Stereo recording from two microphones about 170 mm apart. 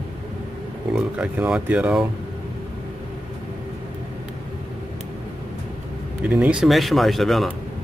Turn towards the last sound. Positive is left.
turn(degrees=0)  # may be behind; listen again after turning